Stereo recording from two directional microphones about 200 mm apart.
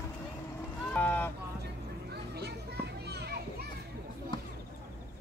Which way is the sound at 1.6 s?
55° right (ahead or behind).